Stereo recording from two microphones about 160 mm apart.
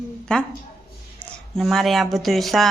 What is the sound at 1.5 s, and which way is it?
Speech, centre (ahead or behind).